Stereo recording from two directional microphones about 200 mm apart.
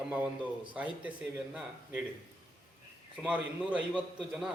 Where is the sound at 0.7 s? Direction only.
5° right (ahead or behind).